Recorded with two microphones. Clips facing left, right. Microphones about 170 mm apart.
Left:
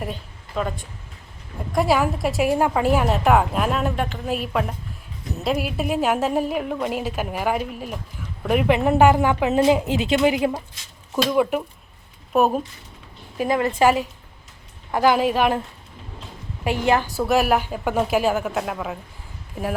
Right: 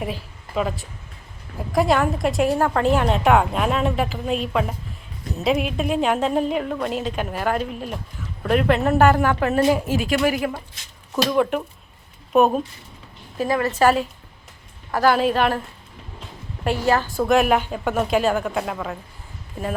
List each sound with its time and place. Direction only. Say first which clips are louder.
0.0 s a woman's voice: right 2 dB; 5° right (ahead or behind)
5.4 s a woman's voice: right 2 dB; centre (ahead or behind); by 10.6 s 20° left (ahead or behind)
11.1 s a woman's voice: even; 5° left (ahead or behind)
13.3 s a woman's voice: even; 15° left (ahead or behind)
16.6 s a woman's voice: even; 15° left (ahead or behind)
17.2 s a woman's voice: right 2 dB; 5° left (ahead or behind)